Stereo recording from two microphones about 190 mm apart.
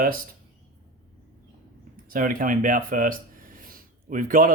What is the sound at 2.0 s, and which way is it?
Speech, 45° right (ahead or behind).